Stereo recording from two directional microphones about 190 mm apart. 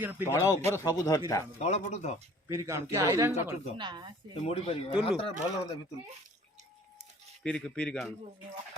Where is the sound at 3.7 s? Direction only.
25° right (ahead or behind).